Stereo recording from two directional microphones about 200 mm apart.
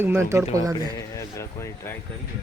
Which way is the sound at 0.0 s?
10° right (ahead or behind).